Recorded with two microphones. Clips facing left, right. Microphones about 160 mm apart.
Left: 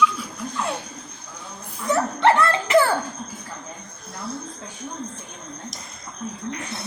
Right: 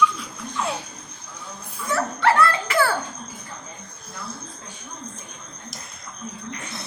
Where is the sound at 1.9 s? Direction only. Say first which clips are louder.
Left 3 dB; 20° left (ahead or behind).